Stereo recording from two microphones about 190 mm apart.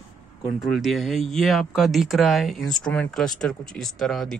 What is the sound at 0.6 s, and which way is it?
Speech, centre (ahead or behind).